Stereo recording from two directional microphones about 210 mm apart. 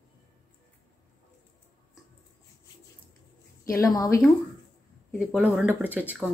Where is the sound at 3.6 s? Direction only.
15° left (ahead or behind).